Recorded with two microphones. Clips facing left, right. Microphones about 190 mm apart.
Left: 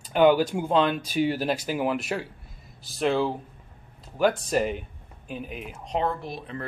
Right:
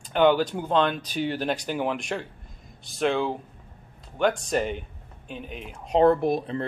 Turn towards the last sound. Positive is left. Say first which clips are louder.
# right 10 dB
turn(degrees=-55)  # may be behind; listen again after turning